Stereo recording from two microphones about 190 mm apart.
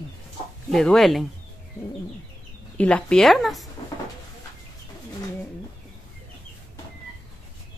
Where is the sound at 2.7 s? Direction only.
5° left (ahead or behind).